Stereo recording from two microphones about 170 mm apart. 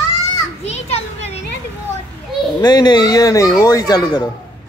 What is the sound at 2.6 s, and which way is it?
Speech, 25° left (ahead or behind).